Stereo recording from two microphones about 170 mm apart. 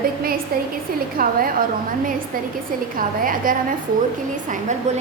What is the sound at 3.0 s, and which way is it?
A woman's voice, 55° right (ahead or behind).